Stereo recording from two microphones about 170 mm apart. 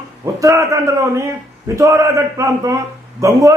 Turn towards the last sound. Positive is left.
turn(degrees=-20)  # may be behind; listen again after turning